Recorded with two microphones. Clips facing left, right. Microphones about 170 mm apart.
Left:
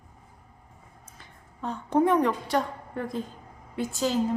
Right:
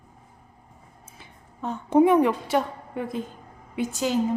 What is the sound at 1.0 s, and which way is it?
A woman's voice, 5° right (ahead or behind).